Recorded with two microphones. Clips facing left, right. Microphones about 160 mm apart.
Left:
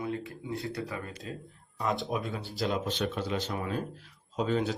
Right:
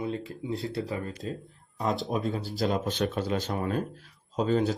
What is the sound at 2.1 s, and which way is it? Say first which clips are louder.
Speech: right 4 dB; 40° right (ahead or behind).